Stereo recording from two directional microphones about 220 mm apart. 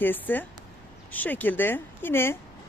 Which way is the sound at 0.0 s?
10° left (ahead or behind).